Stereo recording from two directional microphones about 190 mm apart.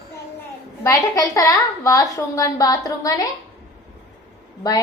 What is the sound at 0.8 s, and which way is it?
A woman's voice, 15° left (ahead or behind).